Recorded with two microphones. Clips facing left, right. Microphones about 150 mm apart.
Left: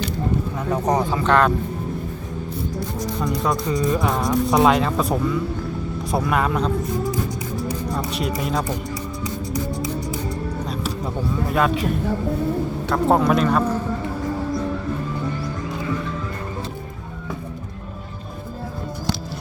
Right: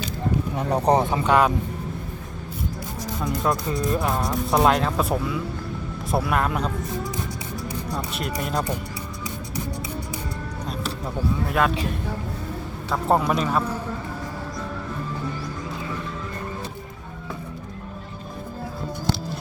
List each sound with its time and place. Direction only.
0.7 s speech: 30° right (ahead or behind)
1.2 s speech: 10° right (ahead or behind)
3.2 s speech: centre (ahead or behind)
8.1 s speech: centre (ahead or behind)
12.9 s speech: centre (ahead or behind)